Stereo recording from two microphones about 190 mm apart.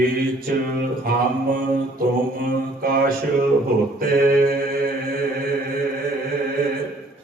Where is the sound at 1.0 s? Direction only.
50° right (ahead or behind).